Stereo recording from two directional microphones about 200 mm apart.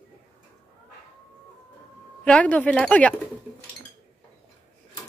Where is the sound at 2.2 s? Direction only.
5° left (ahead or behind).